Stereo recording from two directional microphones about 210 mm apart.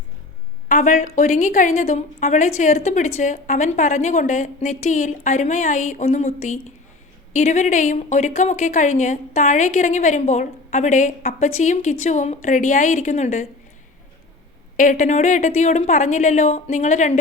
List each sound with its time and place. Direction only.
0.7 s a woman's voice: 35° left (ahead or behind)
14.8 s a woman's voice: 35° left (ahead or behind)